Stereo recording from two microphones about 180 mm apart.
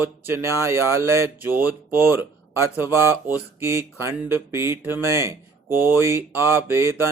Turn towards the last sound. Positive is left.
turn(degrees=-15)  # may be behind; listen again after turning